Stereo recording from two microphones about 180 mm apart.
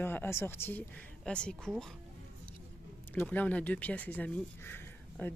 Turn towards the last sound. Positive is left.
turn(degrees=10)  # may be behind; listen again after turning